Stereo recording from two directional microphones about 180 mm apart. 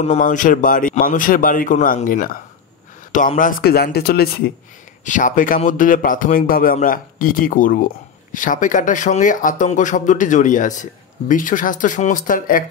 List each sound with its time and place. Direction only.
0.0 s speech: 40° left (ahead or behind); by 4.3 s 60° left (ahead or behind)
5.0 s speech: 45° left (ahead or behind)